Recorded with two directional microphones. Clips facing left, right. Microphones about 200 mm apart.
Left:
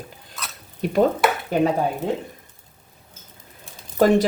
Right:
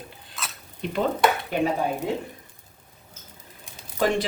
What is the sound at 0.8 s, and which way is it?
Speech, 45° left (ahead or behind).